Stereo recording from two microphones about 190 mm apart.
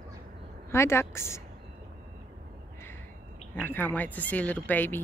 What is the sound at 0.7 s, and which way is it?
Speech, 15° left (ahead or behind).